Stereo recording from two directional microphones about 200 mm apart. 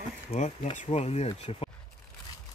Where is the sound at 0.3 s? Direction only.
35° left (ahead or behind).